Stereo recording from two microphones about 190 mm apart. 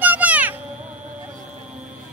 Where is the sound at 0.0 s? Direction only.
10° right (ahead or behind).